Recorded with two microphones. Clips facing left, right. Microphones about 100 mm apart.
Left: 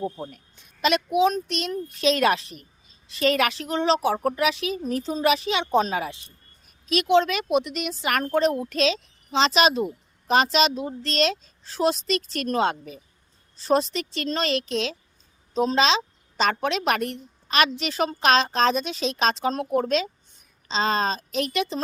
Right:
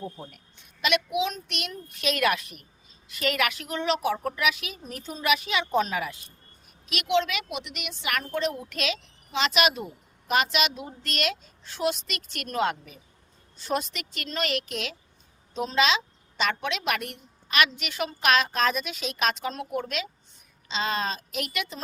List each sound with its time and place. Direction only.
0.0 s a woman's voice: 30° left (ahead or behind)